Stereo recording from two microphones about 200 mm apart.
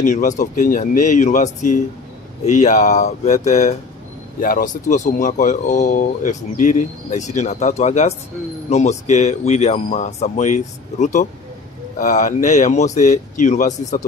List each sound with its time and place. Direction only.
0.0 s speech: 40° left (ahead or behind)